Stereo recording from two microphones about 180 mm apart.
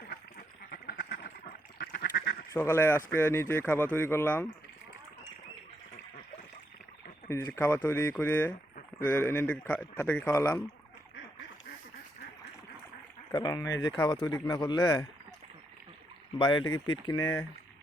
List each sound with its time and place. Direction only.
0.7 s duck: 60° left (ahead or behind)
2.5 s speech: 15° left (ahead or behind)
7.3 s speech: 15° left (ahead or behind)
13.3 s speech: 20° left (ahead or behind)
16.4 s speech: 25° left (ahead or behind)